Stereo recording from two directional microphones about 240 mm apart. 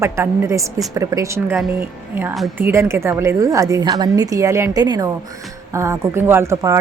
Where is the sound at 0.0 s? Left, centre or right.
Centre.